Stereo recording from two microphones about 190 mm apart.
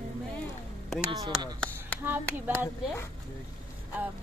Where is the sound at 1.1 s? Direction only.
20° right (ahead or behind).